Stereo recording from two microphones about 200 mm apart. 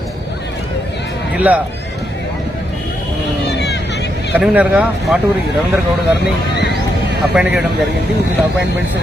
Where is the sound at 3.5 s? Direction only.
60° left (ahead or behind).